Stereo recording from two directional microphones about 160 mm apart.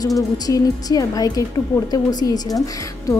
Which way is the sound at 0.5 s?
25° left (ahead or behind).